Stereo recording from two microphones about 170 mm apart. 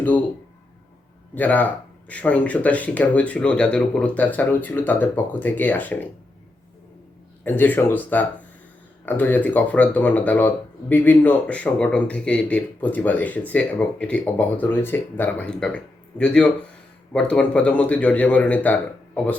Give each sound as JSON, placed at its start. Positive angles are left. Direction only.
{"t": 1.4, "sound": "speech", "side_deg": 10}
{"t": 7.4, "sound": "speech", "side_deg": 10}